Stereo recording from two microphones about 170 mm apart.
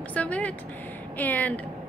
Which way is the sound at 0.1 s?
10° left (ahead or behind).